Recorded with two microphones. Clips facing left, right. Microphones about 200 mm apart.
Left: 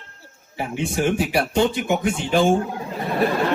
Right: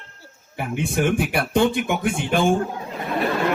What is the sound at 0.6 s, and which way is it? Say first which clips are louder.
Speech: even; 55° right (ahead or behind).